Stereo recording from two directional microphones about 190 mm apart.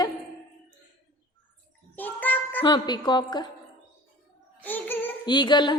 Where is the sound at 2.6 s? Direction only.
25° left (ahead or behind).